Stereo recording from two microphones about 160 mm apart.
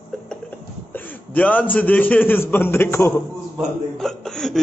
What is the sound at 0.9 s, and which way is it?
A man's voice, 10° left (ahead or behind).